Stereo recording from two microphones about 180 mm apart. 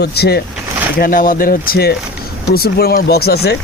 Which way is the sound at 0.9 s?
50° left (ahead or behind).